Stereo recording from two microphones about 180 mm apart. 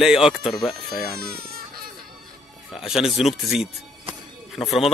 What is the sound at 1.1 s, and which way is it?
Speech, 60° right (ahead or behind).